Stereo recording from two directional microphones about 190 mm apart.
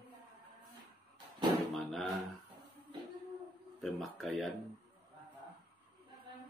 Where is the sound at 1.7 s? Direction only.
Centre (ahead or behind).